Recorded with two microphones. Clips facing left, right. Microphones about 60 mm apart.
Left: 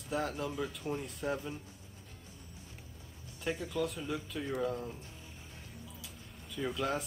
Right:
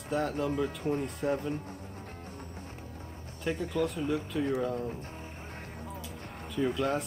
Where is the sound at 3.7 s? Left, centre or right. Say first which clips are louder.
Right 5 dB; centre.